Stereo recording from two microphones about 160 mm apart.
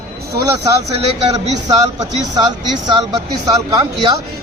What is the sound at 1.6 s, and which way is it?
Speech, 25° right (ahead or behind).